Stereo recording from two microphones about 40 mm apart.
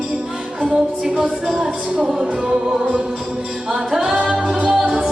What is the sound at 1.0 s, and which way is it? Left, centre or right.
Music, right.